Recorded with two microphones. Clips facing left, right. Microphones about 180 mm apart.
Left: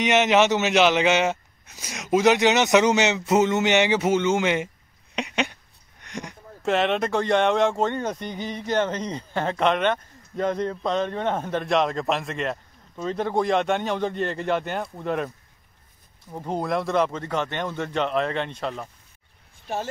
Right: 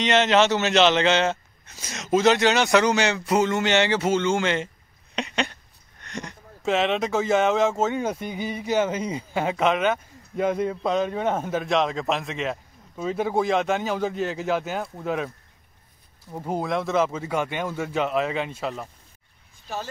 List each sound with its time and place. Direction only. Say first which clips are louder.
0.0 s speech: even; 15° left (ahead or behind)
5.1 s a sound: left 1 dB; 15° left (ahead or behind)
6.6 s speech: even; centre (ahead or behind)